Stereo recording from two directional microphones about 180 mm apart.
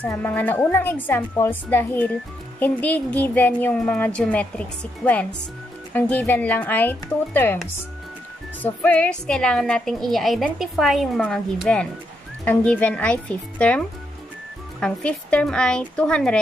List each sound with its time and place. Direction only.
0.0 s a woman's voice: 10° left (ahead or behind)
8.6 s a woman's voice: 10° left (ahead or behind)